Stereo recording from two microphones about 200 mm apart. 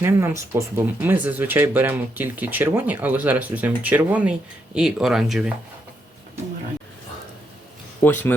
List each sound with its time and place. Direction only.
0.0 s speech: 15° right (ahead or behind)
8.0 s speech: 10° left (ahead or behind)